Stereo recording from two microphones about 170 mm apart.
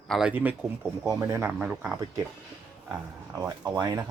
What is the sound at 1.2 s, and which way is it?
Speech, 15° right (ahead or behind).